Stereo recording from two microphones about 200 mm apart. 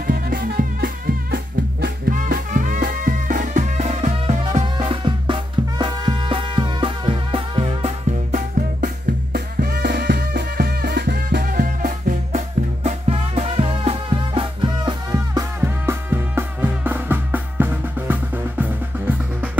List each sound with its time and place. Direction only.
0.0 s music: 45° right (ahead or behind); by 19.5 s 10° right (ahead or behind)